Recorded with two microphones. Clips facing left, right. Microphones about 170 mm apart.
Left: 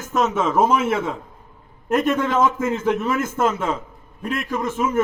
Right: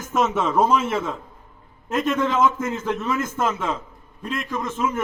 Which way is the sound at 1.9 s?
10° left (ahead or behind).